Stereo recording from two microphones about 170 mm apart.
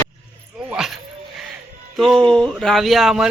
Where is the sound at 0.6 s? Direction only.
5° right (ahead or behind).